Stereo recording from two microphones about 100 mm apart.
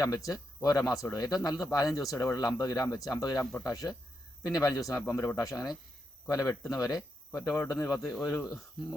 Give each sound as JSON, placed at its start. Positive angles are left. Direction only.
{"t": 0.0, "sound": "speech", "side_deg": 35}